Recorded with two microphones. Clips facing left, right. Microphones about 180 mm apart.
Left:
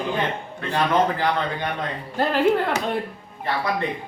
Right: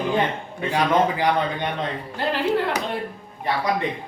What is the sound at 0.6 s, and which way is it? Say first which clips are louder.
Speech: right 1 dB; 10° right (ahead or behind).